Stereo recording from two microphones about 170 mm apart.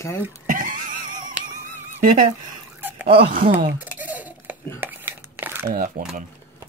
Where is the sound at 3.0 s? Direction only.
30° right (ahead or behind).